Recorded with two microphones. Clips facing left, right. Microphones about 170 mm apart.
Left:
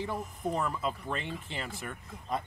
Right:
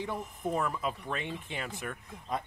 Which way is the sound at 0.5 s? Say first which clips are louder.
Even; 5° right (ahead or behind).